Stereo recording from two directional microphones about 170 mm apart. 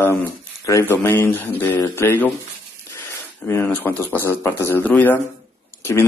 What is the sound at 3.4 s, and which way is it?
Speech, 10° left (ahead or behind).